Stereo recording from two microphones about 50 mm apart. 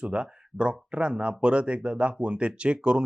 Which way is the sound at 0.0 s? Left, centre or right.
Right.